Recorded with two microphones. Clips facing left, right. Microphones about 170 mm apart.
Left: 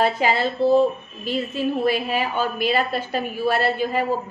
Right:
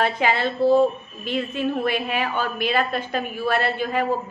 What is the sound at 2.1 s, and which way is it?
A woman's voice, 10° left (ahead or behind).